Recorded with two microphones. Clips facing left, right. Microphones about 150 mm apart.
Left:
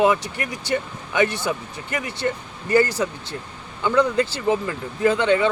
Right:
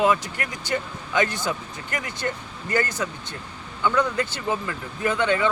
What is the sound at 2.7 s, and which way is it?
Speech, 30° left (ahead or behind).